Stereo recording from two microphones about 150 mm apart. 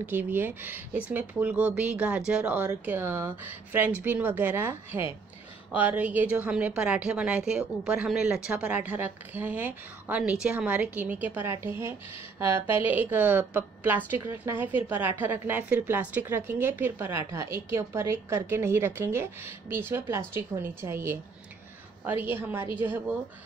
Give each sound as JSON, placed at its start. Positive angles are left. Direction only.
{"t": 0.0, "sound": "a woman's voice", "side_deg": -10}